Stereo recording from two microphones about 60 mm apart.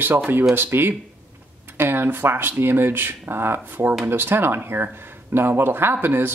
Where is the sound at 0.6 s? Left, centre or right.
Right.